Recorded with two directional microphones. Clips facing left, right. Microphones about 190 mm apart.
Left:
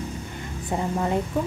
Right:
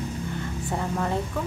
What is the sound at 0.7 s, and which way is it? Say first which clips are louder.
Speech: left 3 dB; 20° left (ahead or behind).